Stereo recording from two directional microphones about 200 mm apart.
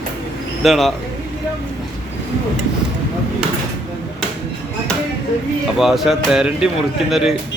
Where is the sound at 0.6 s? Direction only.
Centre (ahead or behind).